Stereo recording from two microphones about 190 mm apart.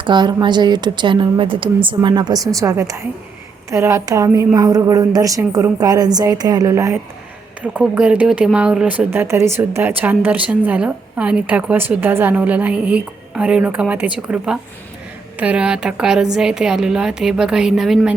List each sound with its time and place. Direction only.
0.0 s a woman's voice: 25° right (ahead or behind); by 18.1 s centre (ahead or behind)